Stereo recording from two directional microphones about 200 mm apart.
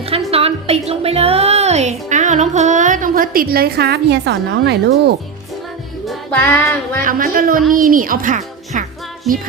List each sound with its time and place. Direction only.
0.1 s a woman's voice: 30° right (ahead or behind); by 5.1 s 55° right (ahead or behind)
6.1 s music: 10° left (ahead or behind)
7.0 s a woman's voice: 45° right (ahead or behind)
9.3 s music: centre (ahead or behind)